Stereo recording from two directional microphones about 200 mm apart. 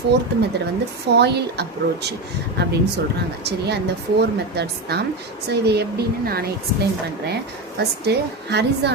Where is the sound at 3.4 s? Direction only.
55° right (ahead or behind).